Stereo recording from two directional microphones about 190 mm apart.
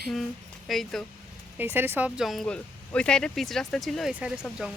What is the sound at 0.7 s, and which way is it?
Speech, centre (ahead or behind).